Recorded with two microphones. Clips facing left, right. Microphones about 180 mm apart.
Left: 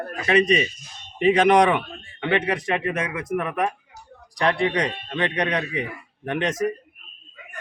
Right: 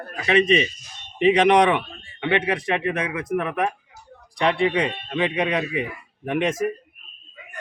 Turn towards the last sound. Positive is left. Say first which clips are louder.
# right 1 dB
turn(degrees=-5)  # may be behind; listen again after turning